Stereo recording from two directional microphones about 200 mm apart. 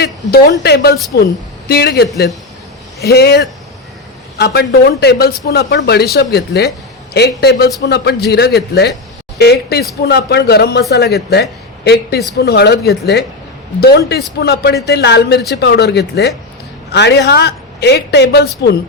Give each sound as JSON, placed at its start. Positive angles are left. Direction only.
{"t": 0.0, "sound": "a man's voice", "side_deg": 50}
{"t": 3.1, "sound": "a man's voice", "side_deg": 55}